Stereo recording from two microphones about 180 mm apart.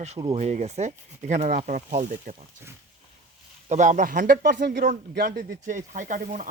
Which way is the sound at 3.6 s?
45° right (ahead or behind).